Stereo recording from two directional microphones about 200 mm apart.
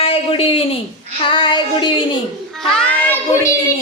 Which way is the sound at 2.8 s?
10° left (ahead or behind).